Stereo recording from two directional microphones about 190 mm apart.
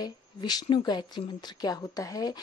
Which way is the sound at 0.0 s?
20° left (ahead or behind).